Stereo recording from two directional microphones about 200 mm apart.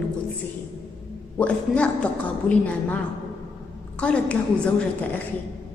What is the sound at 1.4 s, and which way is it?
A woman's voice, 5° left (ahead or behind).